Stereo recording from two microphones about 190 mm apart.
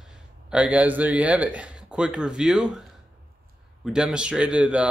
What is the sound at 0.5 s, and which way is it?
Speech, 5° right (ahead or behind).